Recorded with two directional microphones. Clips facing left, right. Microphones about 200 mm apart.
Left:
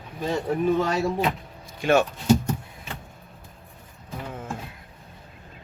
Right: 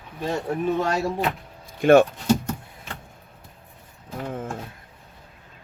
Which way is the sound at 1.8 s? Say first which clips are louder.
Right 6 dB; 55° right (ahead or behind).